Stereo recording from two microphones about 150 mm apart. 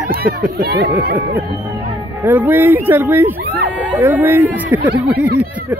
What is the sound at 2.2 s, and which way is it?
Speech, 10° right (ahead or behind).